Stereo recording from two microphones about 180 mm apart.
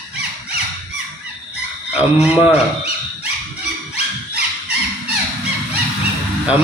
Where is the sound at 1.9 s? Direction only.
10° right (ahead or behind).